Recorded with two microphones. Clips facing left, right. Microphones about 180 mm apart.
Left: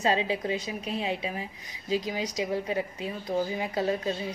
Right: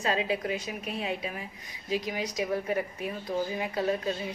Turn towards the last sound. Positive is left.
turn(degrees=25)  # may be behind; listen again after turning